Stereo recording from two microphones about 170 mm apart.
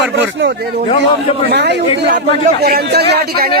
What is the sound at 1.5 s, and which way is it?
Speech, 80° right.